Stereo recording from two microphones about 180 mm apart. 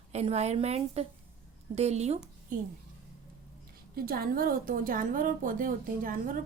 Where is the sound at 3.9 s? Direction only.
55° right (ahead or behind).